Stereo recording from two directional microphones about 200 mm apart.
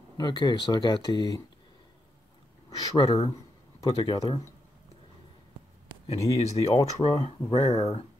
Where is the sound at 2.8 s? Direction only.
20° left (ahead or behind).